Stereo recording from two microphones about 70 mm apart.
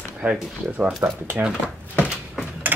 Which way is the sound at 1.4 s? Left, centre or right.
Centre.